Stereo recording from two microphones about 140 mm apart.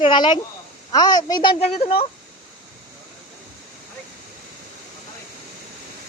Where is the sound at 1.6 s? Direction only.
45° left (ahead or behind).